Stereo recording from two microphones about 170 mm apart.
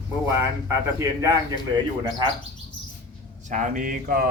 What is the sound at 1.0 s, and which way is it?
Speech, 15° right (ahead or behind).